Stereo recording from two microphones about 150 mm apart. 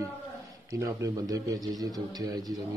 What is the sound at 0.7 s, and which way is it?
A man's voice, 20° right (ahead or behind).